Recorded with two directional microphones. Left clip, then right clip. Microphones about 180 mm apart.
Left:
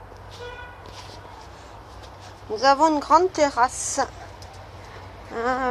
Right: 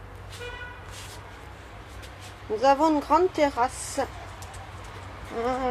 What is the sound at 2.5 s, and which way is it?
A woman's voice, centre (ahead or behind).